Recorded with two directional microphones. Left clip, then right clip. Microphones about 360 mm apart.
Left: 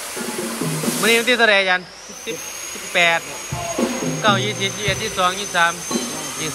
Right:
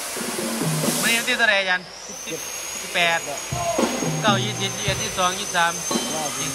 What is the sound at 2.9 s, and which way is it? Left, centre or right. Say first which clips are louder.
Speech: left 4 dB; centre.